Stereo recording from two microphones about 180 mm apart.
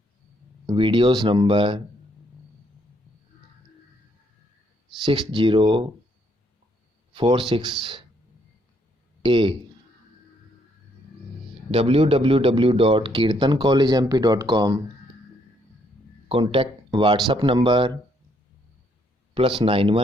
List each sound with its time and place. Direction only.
0.7 s speech: 30° right (ahead or behind)
5.0 s speech: 25° right (ahead or behind)
7.1 s speech: 30° right (ahead or behind)
9.2 s speech: 25° right (ahead or behind)
11.7 s speech: 30° right (ahead or behind)
16.3 s speech: 30° right (ahead or behind)
19.3 s speech: 30° right (ahead or behind)